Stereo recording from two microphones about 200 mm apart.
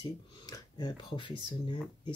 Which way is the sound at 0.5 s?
20° left (ahead or behind).